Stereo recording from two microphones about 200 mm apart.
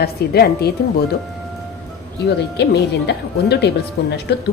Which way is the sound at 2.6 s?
55° left (ahead or behind).